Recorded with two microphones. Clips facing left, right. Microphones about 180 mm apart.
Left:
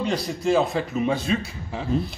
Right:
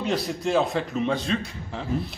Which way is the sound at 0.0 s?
Centre (ahead or behind).